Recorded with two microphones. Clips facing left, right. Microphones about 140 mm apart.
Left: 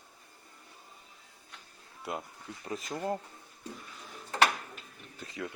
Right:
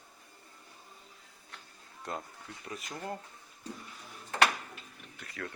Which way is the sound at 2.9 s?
25° left (ahead or behind).